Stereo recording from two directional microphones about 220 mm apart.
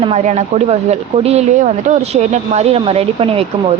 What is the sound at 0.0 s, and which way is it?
Speech, 30° right (ahead or behind).